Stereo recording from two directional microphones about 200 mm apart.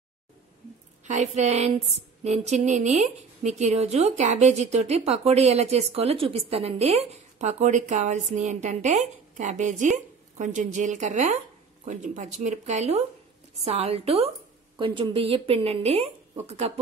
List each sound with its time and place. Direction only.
1.0 s a woman's voice: 35° right (ahead or behind)